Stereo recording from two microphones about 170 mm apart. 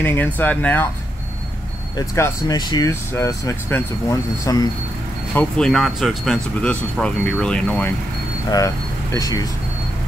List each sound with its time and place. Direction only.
0.0 s speech: 10° left (ahead or behind)
2.0 s speech: 20° left (ahead or behind)
5.3 s speech: 5° left (ahead or behind)
8.5 s speech: 20° left (ahead or behind)